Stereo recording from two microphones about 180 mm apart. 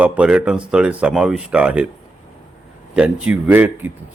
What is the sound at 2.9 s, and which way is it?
Speech, 5° right (ahead or behind).